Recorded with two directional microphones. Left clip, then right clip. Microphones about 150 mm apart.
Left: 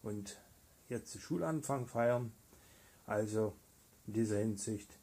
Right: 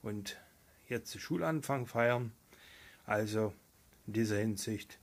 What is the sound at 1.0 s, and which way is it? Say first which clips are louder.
Speech: right 3 dB; 10° right (ahead or behind).